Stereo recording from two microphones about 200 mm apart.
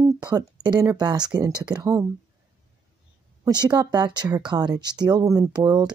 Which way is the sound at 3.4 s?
20° right (ahead or behind).